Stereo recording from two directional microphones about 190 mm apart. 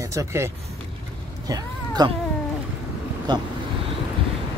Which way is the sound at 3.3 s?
20° right (ahead or behind).